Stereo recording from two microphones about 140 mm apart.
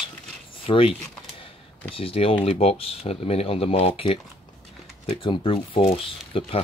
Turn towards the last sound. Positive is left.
turn(degrees=40)  # may be behind; listen again after turning